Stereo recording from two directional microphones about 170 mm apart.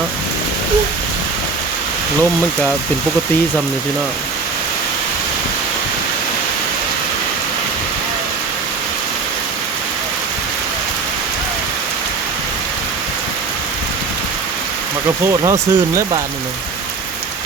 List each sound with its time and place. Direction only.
15.2 s speech: 20° right (ahead or behind)